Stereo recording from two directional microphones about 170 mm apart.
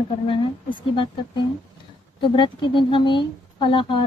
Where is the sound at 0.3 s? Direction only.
30° left (ahead or behind).